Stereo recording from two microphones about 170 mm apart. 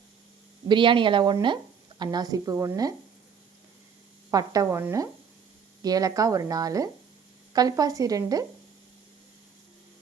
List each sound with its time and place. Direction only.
0.7 s a woman's voice: 30° right (ahead or behind)
4.3 s a woman's voice: 20° right (ahead or behind)